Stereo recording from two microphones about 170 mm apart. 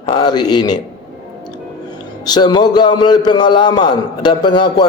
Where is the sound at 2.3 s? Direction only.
25° left (ahead or behind).